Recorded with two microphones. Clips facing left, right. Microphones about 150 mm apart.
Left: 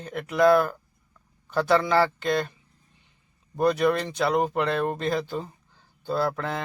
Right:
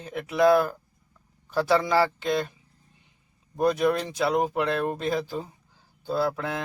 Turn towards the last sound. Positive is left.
turn(degrees=0)  # may be behind; listen again after turning